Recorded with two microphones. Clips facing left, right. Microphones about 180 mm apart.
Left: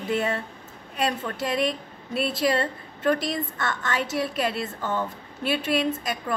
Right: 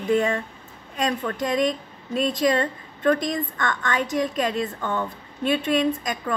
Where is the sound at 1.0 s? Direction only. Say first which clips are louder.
Right 2 dB; 5° left (ahead or behind).